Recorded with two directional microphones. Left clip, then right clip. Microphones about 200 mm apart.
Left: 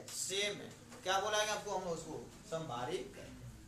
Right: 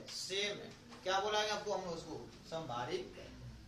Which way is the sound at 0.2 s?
20° left (ahead or behind).